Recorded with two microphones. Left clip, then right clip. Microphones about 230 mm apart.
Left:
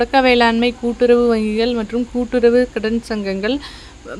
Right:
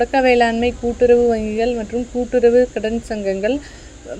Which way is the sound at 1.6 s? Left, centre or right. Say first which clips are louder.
Left 1 dB; left.